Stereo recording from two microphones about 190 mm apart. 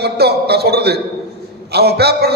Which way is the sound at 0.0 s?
55° right (ahead or behind).